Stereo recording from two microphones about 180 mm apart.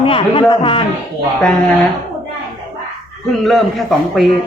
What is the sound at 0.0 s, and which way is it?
Speech, 30° left (ahead or behind).